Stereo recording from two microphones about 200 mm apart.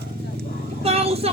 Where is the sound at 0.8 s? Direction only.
30° right (ahead or behind).